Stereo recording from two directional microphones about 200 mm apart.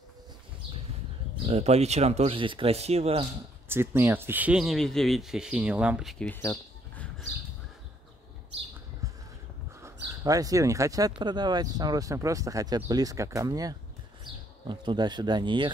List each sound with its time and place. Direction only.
1.5 s speech: 35° right (ahead or behind)
3.6 s speech: 10° right (ahead or behind); by 7.2 s 5° left (ahead or behind)
9.0 s a sound: 15° right (ahead or behind)
10.2 s speech: 15° right (ahead or behind)